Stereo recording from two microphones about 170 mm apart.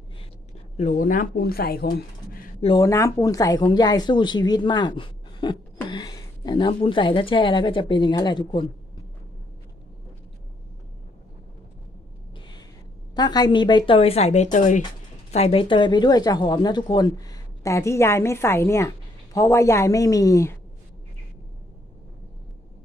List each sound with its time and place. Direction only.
0.7 s speech: 50° left (ahead or behind)
2.8 s a woman's voice: 20° left (ahead or behind)
13.1 s speech: 25° left (ahead or behind); by 14.8 s 45° left (ahead or behind)
15.3 s speech: 35° left (ahead or behind); by 20.5 s 20° left (ahead or behind)